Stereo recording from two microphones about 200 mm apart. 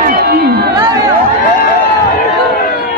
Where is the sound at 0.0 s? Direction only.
50° right (ahead or behind).